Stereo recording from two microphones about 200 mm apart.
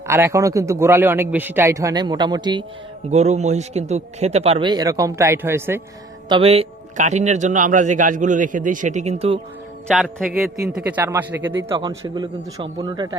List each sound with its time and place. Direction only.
0.1 s a man's voice: 15° right (ahead or behind)
3.1 s speech: 35° right (ahead or behind); by 5.8 s 10° right (ahead or behind)
6.2 s a man's voice: 25° right (ahead or behind)
9.8 s a man's voice: centre (ahead or behind); by 13.1 s 20° right (ahead or behind)